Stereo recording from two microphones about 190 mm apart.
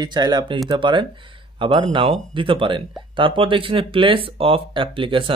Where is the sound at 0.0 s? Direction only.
20° right (ahead or behind).